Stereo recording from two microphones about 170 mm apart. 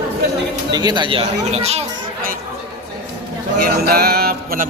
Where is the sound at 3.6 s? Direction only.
65° right (ahead or behind).